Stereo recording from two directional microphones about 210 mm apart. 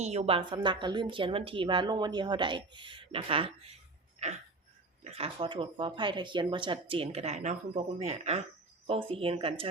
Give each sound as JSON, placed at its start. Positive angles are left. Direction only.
{"t": 0.0, "sound": "a woman's voice", "side_deg": -30}
{"t": 4.2, "sound": "a sound", "side_deg": -30}
{"t": 5.0, "sound": "a woman's voice", "side_deg": -30}